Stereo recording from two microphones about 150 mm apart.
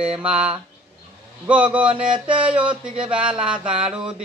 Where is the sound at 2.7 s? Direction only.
35° right (ahead or behind).